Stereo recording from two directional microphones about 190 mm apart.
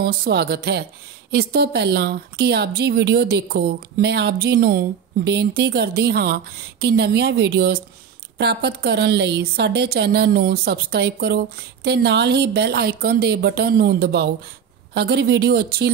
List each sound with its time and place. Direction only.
0.0 s speech: 55° right (ahead or behind)